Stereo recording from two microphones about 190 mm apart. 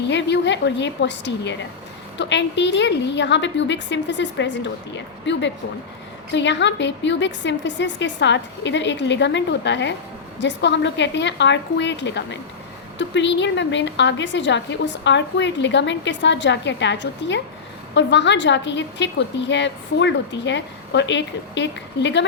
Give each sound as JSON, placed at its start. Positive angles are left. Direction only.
{"t": 0.1, "sound": "a woman's voice", "side_deg": 65}